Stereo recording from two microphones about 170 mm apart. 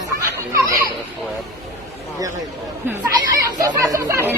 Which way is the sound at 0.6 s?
20° right (ahead or behind).